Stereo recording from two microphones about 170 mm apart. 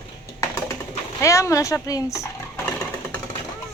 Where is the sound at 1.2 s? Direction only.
15° left (ahead or behind).